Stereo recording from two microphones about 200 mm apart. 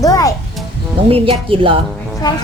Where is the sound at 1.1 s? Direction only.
30° right (ahead or behind).